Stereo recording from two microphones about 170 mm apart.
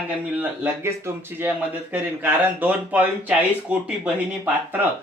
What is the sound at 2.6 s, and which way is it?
Speech, 10° right (ahead or behind).